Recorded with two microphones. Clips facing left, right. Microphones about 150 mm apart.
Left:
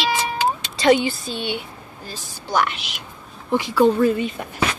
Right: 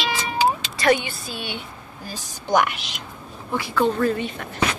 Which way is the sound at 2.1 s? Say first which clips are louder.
Right 5 dB; 15° right (ahead or behind).